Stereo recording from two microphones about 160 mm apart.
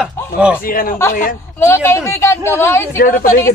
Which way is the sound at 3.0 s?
60° left (ahead or behind).